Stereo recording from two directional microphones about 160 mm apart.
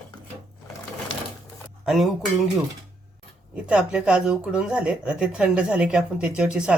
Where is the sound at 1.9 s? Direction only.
Centre (ahead or behind).